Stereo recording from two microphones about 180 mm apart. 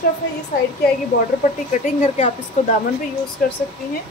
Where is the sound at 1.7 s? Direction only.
40° left (ahead or behind).